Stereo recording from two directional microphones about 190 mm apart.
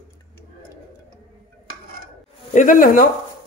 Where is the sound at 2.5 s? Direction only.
45° left (ahead or behind).